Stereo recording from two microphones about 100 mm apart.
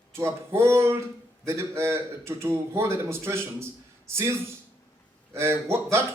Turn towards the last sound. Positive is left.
turn(degrees=-25)  # may be behind; listen again after turning